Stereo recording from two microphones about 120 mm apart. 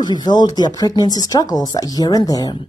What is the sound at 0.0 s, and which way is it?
Speech, 35° left (ahead or behind).